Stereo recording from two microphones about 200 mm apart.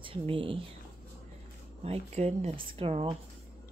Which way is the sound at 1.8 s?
30° right (ahead or behind).